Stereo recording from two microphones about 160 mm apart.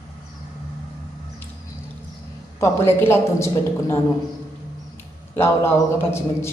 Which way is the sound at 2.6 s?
15° left (ahead or behind).